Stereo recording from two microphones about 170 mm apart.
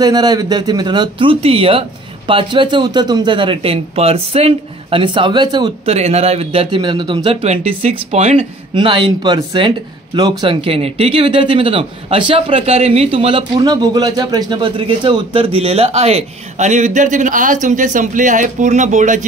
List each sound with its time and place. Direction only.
0.0 s speech: 25° right (ahead or behind)
5.9 s speech: 40° right (ahead or behind)
7.4 s speech: 40° right (ahead or behind)
8.7 s speech: 30° right (ahead or behind); by 19.2 s 45° right (ahead or behind)